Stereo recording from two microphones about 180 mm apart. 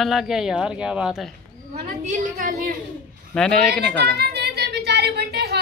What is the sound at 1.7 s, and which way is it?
A woman's voice, 40° right (ahead or behind).